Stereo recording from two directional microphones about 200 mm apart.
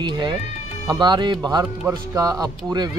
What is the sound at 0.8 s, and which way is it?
Speech, 20° right (ahead or behind).